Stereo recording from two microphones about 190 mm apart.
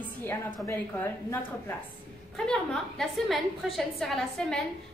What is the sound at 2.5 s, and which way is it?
A woman's voice, centre (ahead or behind).